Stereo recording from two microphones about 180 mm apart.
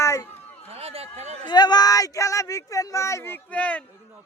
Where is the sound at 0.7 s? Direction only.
35° right (ahead or behind).